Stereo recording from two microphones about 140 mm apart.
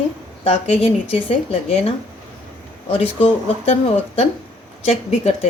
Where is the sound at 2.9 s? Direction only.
45° left (ahead or behind).